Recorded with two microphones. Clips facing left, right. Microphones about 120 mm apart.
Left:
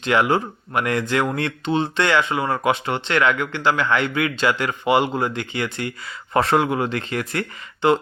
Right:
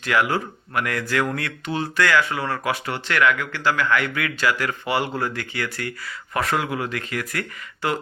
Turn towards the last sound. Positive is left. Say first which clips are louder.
# left 7 dB
turn(degrees=25)  # may be behind; listen again after turning